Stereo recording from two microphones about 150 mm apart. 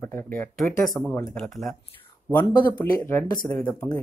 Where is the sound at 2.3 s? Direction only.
20° left (ahead or behind).